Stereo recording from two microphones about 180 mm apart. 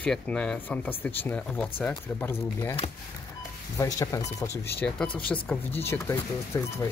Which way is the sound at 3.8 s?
20° left (ahead or behind).